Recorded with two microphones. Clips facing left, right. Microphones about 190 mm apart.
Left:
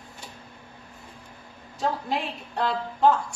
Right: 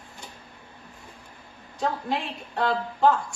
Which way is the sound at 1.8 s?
Centre (ahead or behind).